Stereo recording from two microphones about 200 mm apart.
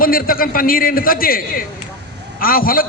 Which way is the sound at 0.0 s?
45° left (ahead or behind).